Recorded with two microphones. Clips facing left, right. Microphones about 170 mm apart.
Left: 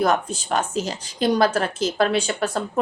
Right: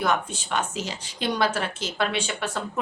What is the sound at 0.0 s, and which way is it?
Speech, 40° left (ahead or behind).